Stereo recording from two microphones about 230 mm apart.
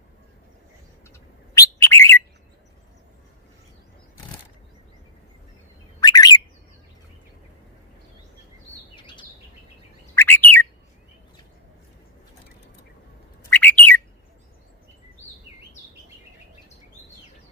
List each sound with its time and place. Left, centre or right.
1.5 s bird: centre
6.0 s bird: centre
9.0 s bird: left
10.2 s bird: centre
13.5 s bird: centre